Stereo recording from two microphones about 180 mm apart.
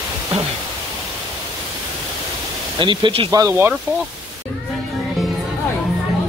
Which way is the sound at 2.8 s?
25° right (ahead or behind).